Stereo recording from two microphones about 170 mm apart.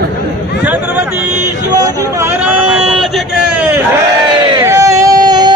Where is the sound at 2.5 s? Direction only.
5° right (ahead or behind).